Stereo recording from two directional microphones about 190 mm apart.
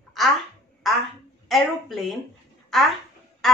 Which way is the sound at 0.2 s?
Centre (ahead or behind).